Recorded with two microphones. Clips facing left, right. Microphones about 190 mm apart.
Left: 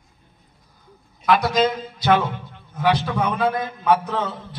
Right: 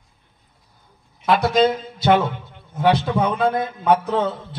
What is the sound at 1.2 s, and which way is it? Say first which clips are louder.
Speech: right 1 dB; 25° right (ahead or behind).